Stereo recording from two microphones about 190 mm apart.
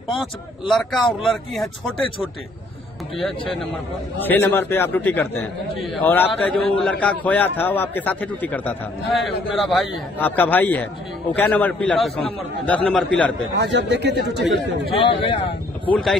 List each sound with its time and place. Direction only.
0.1 s speech: centre (ahead or behind)
4.2 s a man's voice: 10° left (ahead or behind)
13.6 s speech: 65° right (ahead or behind)
14.9 s speech: 30° left (ahead or behind)
15.8 s speech: 5° left (ahead or behind)